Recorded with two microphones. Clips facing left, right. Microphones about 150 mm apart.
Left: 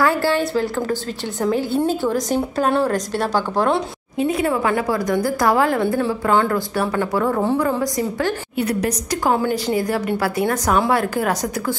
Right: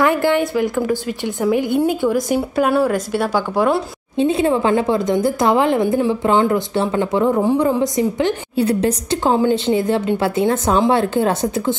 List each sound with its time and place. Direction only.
0.0 s speech: 20° right (ahead or behind)
4.2 s a woman's voice: 25° right (ahead or behind)